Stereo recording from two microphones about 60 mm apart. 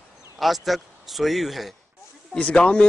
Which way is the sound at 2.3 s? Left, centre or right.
Centre.